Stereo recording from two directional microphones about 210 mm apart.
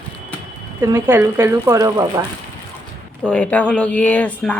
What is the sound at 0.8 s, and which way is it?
Speech, 10° right (ahead or behind).